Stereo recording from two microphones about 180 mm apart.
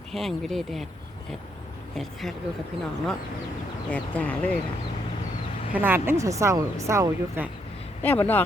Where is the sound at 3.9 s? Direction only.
5° left (ahead or behind).